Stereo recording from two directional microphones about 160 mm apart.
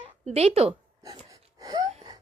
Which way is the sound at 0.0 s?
40° right (ahead or behind).